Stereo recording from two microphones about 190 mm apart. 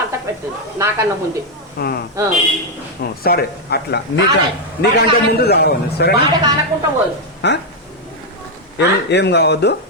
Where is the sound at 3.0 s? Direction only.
50° left (ahead or behind).